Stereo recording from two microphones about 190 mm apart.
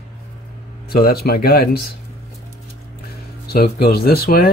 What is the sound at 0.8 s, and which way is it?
Speech, 55° left (ahead or behind).